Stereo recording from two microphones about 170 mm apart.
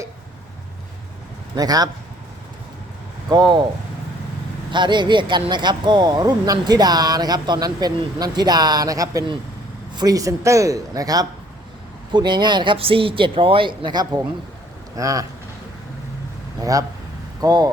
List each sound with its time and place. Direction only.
1.5 s speech: 20° right (ahead or behind)
3.2 s speech: 25° right (ahead or behind)
4.7 s speech: 25° right (ahead or behind)
16.6 s a man's voice: 20° right (ahead or behind)